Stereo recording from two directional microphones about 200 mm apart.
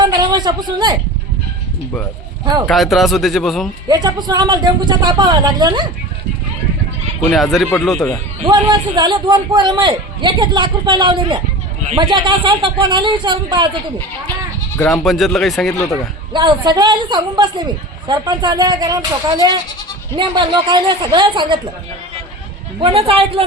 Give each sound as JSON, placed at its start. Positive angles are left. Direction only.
{"t": 0.0, "sound": "a sound", "side_deg": -20}
{"t": 2.6, "sound": "speech", "side_deg": 0}
{"t": 3.8, "sound": "a man's voice", "side_deg": -20}
{"t": 7.3, "sound": "speech", "side_deg": 0}
{"t": 8.4, "sound": "a man's voice", "side_deg": -25}
{"t": 14.8, "sound": "speech", "side_deg": 0}
{"t": 16.3, "sound": "a man's voice", "side_deg": -20}
{"t": 22.8, "sound": "a man's voice", "side_deg": -30}